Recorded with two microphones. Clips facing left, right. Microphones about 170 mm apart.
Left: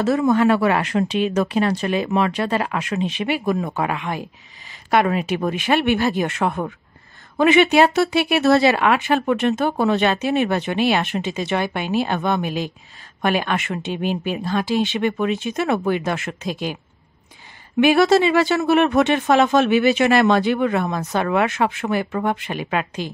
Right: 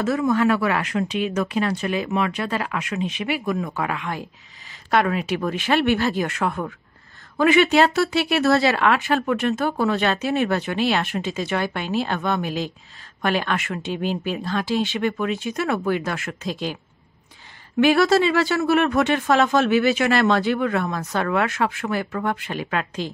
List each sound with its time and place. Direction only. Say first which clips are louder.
0.0 s speech: left 3 dB; 25° left (ahead or behind)
5.3 s speech: left 2 dB; 20° left (ahead or behind)
17.7 s speech: left 2 dB; 20° left (ahead or behind)